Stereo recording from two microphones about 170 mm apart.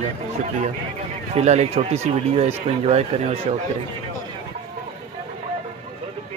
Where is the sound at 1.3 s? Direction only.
40° right (ahead or behind).